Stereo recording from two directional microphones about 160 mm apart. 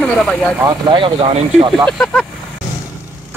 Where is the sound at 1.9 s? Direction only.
5° left (ahead or behind).